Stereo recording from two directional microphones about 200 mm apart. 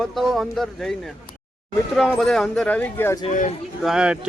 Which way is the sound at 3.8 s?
5° right (ahead or behind).